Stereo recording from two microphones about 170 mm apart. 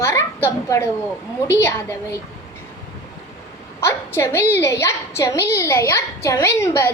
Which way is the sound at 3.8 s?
15° left (ahead or behind).